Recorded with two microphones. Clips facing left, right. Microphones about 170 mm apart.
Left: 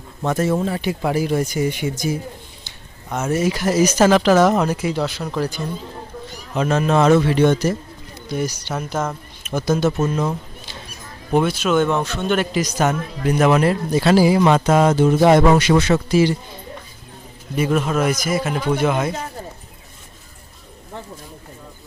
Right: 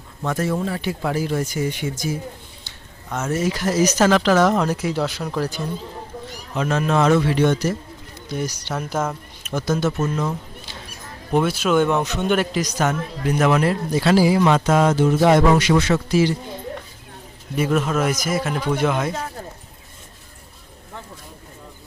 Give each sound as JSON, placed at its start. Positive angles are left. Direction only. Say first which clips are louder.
{"t": 0.2, "sound": "a man's voice", "louder": "left 3 dB", "side_deg": 25}
{"t": 6.6, "sound": "a man's voice", "louder": "left 3 dB", "side_deg": 20}
{"t": 8.3, "sound": "speech", "louder": "left 2 dB", "side_deg": 5}
{"t": 8.9, "sound": "speech", "louder": "right 1 dB", "side_deg": -5}
{"t": 9.7, "sound": "a man's voice", "louder": "left 3 dB", "side_deg": 15}
{"t": 11.3, "sound": "speech", "louder": "left 1 dB", "side_deg": -5}
{"t": 12.4, "sound": "speech", "louder": "left 2 dB", "side_deg": 5}
{"t": 13.5, "sound": "a man's voice", "louder": "left 2 dB", "side_deg": 25}
{"t": 16.2, "sound": "speech", "louder": "left 2 dB", "side_deg": 15}
{"t": 17.6, "sound": "speech", "louder": "left 1 dB", "side_deg": 0}